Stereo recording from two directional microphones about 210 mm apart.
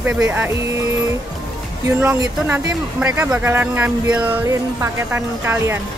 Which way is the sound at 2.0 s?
10° right (ahead or behind).